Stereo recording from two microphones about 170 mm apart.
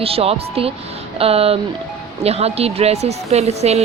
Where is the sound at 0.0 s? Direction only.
35° right (ahead or behind).